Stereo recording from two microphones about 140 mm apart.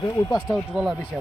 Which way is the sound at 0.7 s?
5° right (ahead or behind).